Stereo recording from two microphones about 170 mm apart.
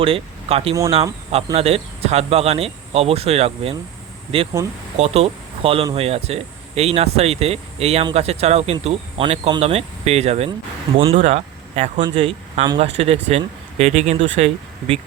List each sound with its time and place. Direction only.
0.0 s speech: 35° right (ahead or behind)